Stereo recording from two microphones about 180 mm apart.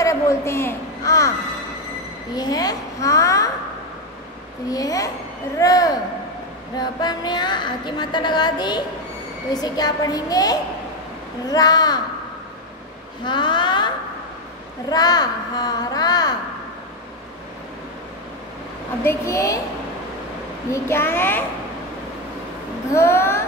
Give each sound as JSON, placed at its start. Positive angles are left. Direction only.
{"t": 0.0, "sound": "a woman's voice", "side_deg": 15}
{"t": 2.3, "sound": "a woman's voice", "side_deg": 20}
{"t": 4.6, "sound": "a woman's voice", "side_deg": 20}
{"t": 13.2, "sound": "a woman's voice", "side_deg": 25}
{"t": 19.0, "sound": "a child's voice", "side_deg": 15}
{"t": 20.7, "sound": "a child's voice", "side_deg": 15}
{"t": 22.9, "sound": "a child's voice", "side_deg": 15}